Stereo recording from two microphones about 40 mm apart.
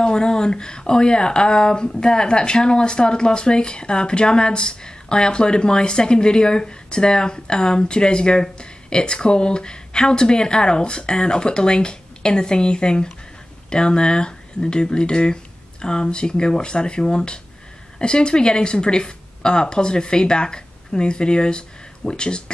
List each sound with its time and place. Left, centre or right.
0.0 s a woman's voice: centre